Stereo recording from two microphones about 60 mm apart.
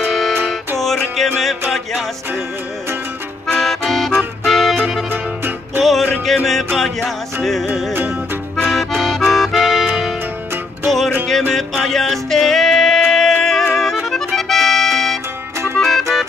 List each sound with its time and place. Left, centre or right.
0.7 s music: centre
3.4 s accordion: centre
4.5 s music: centre
7.9 s music: right
8.6 s accordion: centre
11.2 s music: centre